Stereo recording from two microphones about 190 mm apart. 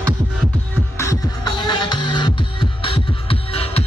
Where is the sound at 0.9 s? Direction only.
20° left (ahead or behind).